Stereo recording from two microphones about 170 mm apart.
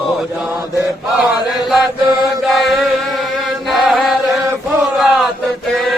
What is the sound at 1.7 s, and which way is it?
Chant, centre (ahead or behind).